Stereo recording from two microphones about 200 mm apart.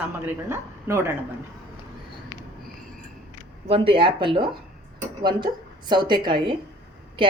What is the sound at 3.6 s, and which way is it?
A woman's voice, 30° right (ahead or behind).